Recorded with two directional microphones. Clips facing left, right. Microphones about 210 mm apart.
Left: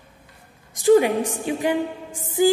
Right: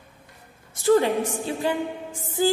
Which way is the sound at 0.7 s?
15° left (ahead or behind).